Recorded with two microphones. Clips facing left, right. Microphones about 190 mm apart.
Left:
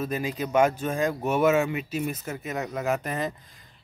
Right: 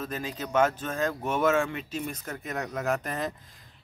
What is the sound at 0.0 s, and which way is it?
Speech, 10° left (ahead or behind).